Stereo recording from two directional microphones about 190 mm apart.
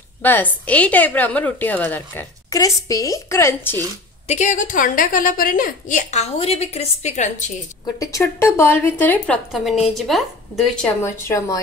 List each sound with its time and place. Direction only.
0.2 s a woman's voice: 10° left (ahead or behind)
4.3 s a woman's voice: 40° left (ahead or behind)
7.8 s a woman's voice: 20° left (ahead or behind); by 10.9 s centre (ahead or behind)
11.1 s a woman's voice: 15° left (ahead or behind)